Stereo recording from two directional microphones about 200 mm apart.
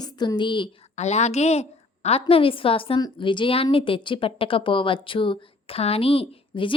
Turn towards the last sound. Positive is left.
turn(degrees=25)  # may be behind; listen again after turning